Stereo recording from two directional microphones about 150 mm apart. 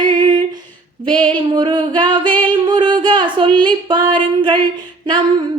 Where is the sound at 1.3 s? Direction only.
30° right (ahead or behind).